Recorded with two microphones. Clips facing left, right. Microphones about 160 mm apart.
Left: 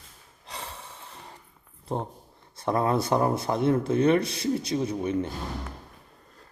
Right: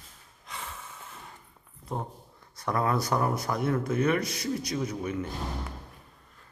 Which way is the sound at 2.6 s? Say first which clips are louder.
Left 3 dB; 25° left (ahead or behind).